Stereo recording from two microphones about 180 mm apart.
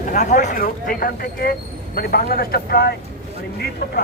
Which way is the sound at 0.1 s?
40° left (ahead or behind).